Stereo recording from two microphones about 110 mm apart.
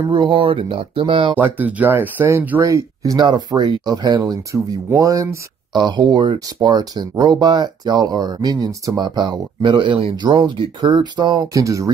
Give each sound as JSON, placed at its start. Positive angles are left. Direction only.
{"t": 0.1, "sound": "speech", "side_deg": -50}
{"t": 1.3, "sound": "speech", "side_deg": -15}
{"t": 2.6, "sound": "speech", "side_deg": -30}
{"t": 5.7, "sound": "speech", "side_deg": -45}
{"t": 11.6, "sound": "speech", "side_deg": -30}